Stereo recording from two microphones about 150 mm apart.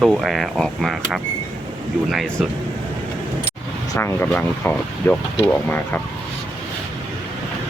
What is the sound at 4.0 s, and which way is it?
Speech, 10° left (ahead or behind).